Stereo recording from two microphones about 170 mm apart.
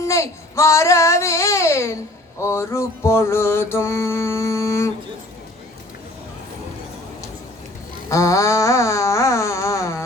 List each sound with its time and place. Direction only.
0.0 s mantra: 15° left (ahead or behind)
8.1 s mantra: 20° left (ahead or behind)